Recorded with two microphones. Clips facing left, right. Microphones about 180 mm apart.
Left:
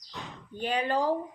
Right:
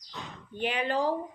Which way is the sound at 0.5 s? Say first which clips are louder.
Left 1 dB; 45° left (ahead or behind).